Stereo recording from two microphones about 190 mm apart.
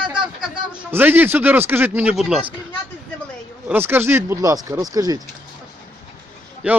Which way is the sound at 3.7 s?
10° right (ahead or behind).